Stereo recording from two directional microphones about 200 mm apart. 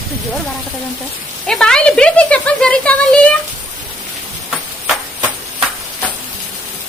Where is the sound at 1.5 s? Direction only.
5° left (ahead or behind).